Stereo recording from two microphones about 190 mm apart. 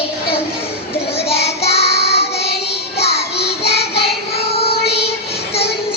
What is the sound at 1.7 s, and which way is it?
Child singing, 60° left (ahead or behind).